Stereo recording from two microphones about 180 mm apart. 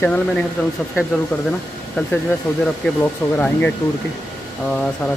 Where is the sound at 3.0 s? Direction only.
10° left (ahead or behind).